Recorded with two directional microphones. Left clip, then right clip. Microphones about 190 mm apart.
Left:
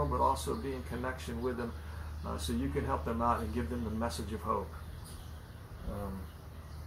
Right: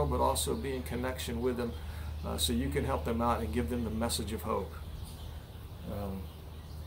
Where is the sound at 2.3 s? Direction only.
20° right (ahead or behind).